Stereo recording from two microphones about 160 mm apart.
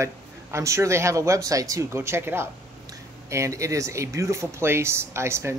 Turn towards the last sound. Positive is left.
turn(degrees=-15)  # may be behind; listen again after turning